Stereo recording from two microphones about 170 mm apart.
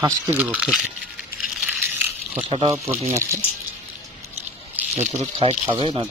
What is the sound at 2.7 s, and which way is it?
Speech, 15° right (ahead or behind).